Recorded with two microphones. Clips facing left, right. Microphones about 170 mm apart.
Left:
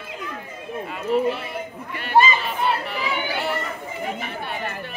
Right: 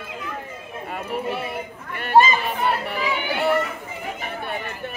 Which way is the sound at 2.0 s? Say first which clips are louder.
Right 2 dB; 45° right (ahead or behind).